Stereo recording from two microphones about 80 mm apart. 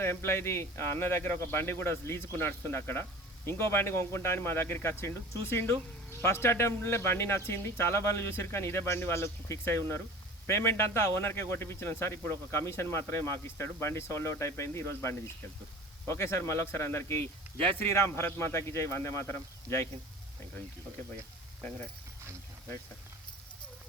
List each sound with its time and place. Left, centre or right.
0.0 s a man's voice: left